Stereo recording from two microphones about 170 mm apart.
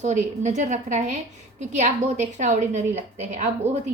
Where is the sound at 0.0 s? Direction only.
45° right (ahead or behind).